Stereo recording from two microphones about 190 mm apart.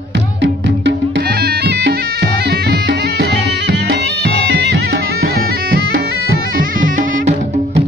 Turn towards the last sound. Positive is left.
turn(degrees=-45)  # may be behind; listen again after turning